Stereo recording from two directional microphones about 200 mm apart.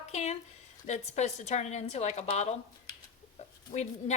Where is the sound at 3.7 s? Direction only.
35° left (ahead or behind).